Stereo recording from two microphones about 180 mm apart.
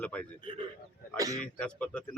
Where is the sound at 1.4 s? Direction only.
5° left (ahead or behind).